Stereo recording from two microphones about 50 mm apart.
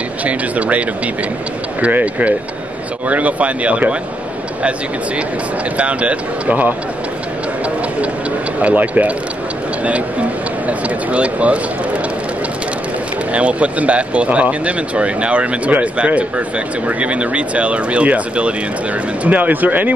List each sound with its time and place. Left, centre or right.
0.2 s speech: right
5.8 s speech: right
8.5 s speech: right
10.7 s speech: right
13.3 s speech: right